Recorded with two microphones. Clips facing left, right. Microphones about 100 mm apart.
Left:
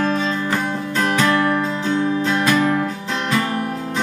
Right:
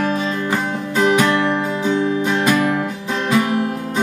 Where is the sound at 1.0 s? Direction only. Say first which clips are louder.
Right 2 dB; 20° right (ahead or behind).